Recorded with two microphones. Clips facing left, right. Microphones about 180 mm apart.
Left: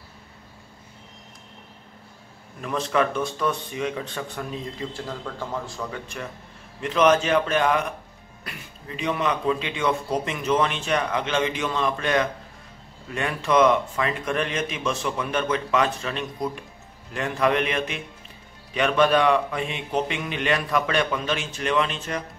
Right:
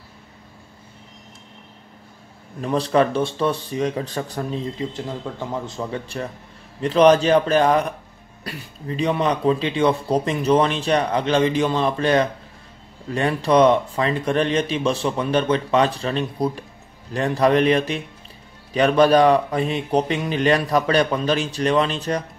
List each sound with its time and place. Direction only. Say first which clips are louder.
2.6 s speech: right 5 dB; 35° right (ahead or behind)
4.7 s speech: right 4 dB; 20° right (ahead or behind)